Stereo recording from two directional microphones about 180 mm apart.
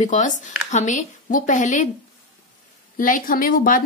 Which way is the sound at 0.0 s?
45° left (ahead or behind).